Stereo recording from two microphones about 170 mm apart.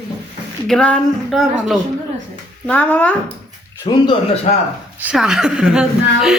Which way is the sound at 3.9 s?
30° left (ahead or behind).